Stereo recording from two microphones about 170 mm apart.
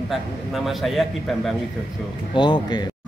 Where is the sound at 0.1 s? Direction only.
Centre (ahead or behind).